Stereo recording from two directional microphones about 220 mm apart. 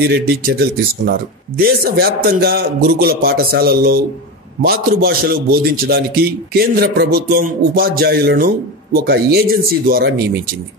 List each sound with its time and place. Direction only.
0.3 s speech: 45° right (ahead or behind)